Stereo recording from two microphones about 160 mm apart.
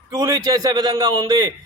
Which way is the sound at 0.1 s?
25° right (ahead or behind).